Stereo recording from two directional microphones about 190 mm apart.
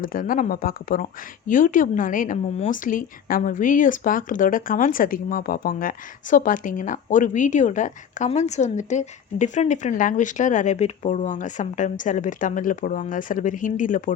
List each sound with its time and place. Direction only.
0.0 s speech: 45° left (ahead or behind)